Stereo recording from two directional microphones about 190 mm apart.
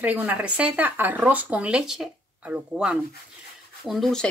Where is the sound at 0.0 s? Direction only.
10° right (ahead or behind).